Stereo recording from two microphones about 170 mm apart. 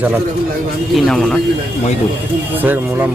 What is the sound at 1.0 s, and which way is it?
Speech, 5° left (ahead or behind).